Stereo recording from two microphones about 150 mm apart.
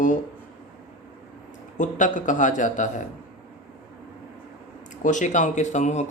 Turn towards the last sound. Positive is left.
turn(degrees=50)  # may be behind; listen again after turning